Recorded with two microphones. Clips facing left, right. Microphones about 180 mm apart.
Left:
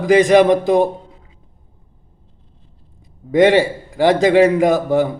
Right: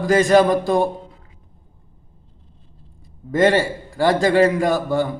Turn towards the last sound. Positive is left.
turn(degrees=20)  # may be behind; listen again after turning